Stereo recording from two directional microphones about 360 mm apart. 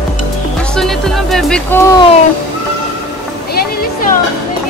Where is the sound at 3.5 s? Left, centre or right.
Left.